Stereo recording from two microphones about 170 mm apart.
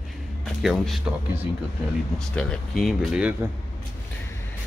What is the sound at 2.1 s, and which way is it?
Speech, 5° left (ahead or behind).